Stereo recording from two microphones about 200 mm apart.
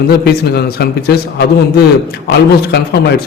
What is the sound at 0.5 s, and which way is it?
Speech, 50° left (ahead or behind).